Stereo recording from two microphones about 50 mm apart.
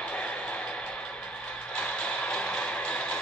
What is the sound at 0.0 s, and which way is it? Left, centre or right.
Vehicle, centre.